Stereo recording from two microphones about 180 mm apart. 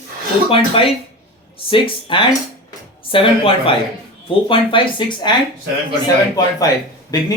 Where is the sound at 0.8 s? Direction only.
30° left (ahead or behind).